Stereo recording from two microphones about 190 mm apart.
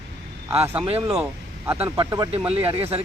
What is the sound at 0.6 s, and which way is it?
Speech, 10° right (ahead or behind).